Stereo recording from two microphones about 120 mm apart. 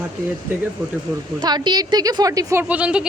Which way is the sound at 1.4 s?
35° right (ahead or behind).